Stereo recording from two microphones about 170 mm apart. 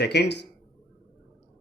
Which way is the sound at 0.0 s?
80° left.